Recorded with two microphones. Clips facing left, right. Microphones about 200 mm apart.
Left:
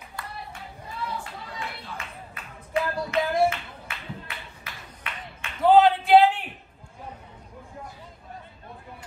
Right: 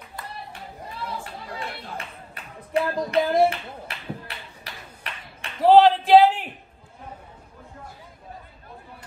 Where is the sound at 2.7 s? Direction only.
30° right (ahead or behind).